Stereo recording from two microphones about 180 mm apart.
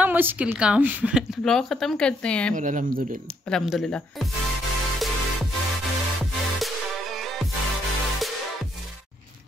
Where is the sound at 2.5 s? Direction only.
45° right (ahead or behind).